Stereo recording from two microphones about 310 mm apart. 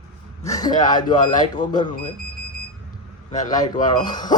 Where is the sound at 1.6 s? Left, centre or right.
Left.